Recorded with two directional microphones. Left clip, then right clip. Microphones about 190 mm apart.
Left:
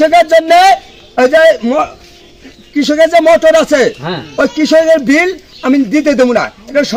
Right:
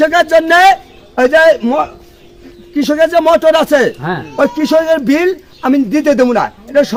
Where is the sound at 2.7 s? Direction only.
15° right (ahead or behind).